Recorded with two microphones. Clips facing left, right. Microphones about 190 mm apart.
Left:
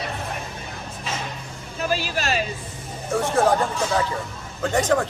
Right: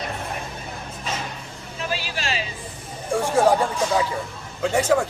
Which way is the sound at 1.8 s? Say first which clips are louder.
Left 4 dB; 45° left (ahead or behind).